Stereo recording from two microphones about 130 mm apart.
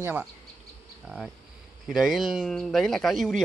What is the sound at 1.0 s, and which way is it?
Speech, centre (ahead or behind).